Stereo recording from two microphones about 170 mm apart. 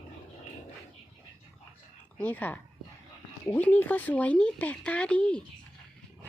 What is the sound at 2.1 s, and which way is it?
Speech, 10° left (ahead or behind).